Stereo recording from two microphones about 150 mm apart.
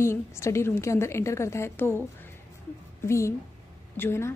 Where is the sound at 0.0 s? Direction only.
20° left (ahead or behind).